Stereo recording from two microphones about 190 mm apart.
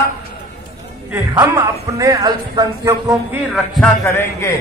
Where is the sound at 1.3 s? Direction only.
15° right (ahead or behind).